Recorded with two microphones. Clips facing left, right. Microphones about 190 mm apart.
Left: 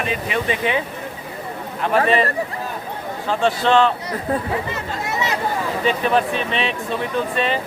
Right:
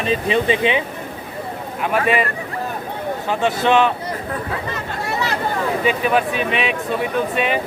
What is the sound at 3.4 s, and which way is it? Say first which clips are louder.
Speech: even; 15° right (ahead or behind).